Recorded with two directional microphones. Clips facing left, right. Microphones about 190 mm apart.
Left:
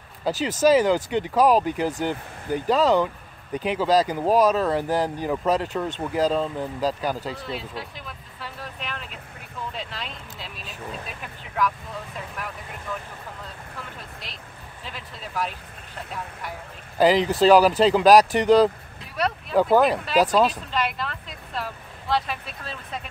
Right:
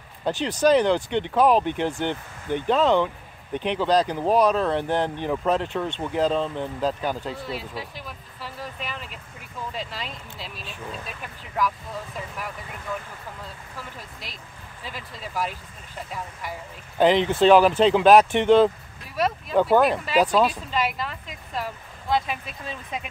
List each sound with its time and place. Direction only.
0.2 s speech: 5° left (ahead or behind)
8.4 s a sound: 5° right (ahead or behind)
9.8 s speech: 5° right (ahead or behind)
14.9 s speech: 10° right (ahead or behind)
17.0 s speech: 5° left (ahead or behind); by 22.8 s 10° right (ahead or behind)